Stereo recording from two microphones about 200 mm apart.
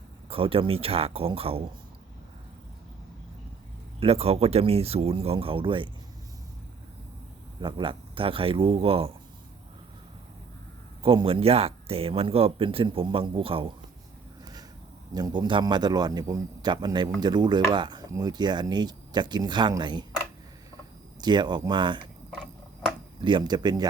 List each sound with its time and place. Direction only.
0.3 s speech: 25° right (ahead or behind)
4.0 s speech: 30° right (ahead or behind)
7.6 s speech: 25° right (ahead or behind)
11.0 s speech: 25° right (ahead or behind)
15.1 s speech: 20° right (ahead or behind)
21.2 s speech: 20° right (ahead or behind)
23.2 s speech: 20° right (ahead or behind)